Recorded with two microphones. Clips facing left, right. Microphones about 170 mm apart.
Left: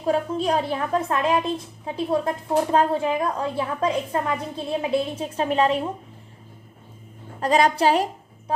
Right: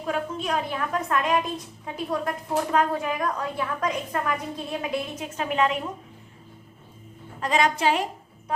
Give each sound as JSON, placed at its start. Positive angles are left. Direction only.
{"t": 0.0, "sound": "a woman's voice", "side_deg": 35}
{"t": 7.3, "sound": "a woman's voice", "side_deg": 35}